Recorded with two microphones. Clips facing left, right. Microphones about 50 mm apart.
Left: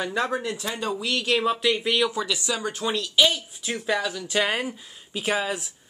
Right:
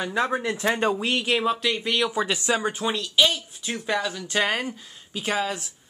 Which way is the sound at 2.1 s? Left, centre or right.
Right.